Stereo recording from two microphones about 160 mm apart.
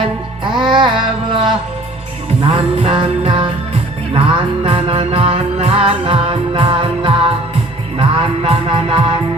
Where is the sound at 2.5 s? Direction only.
35° right (ahead or behind).